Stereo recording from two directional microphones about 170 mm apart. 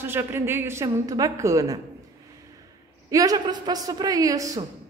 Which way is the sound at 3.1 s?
20° right (ahead or behind).